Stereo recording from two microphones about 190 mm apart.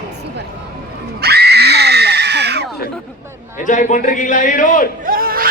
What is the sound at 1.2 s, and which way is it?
Screaming, 60° right (ahead or behind).